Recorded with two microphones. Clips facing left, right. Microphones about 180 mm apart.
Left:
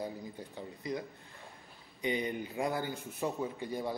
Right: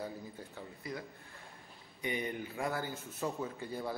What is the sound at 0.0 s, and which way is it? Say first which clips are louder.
Speech: left 3 dB; 15° left (ahead or behind).